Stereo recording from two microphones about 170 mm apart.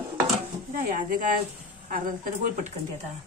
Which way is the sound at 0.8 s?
55° right (ahead or behind).